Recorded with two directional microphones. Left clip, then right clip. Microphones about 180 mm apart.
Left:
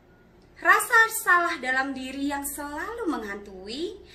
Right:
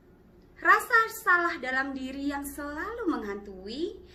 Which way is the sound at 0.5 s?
15° left (ahead or behind).